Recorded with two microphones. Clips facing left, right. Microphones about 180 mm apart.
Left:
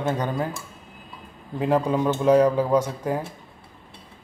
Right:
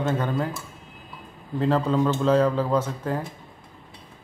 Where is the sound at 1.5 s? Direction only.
15° left (ahead or behind).